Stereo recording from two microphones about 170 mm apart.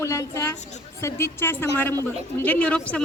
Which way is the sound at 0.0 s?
15° left (ahead or behind).